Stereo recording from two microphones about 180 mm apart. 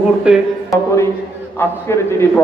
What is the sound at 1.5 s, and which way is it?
Speech, 15° left (ahead or behind).